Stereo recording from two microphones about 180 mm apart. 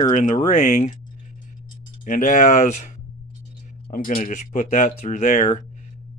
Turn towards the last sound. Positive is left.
turn(degrees=40)  # may be behind; listen again after turning